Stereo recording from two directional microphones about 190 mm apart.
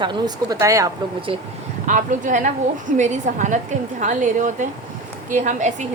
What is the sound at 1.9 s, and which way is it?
A woman's voice, 40° right (ahead or behind).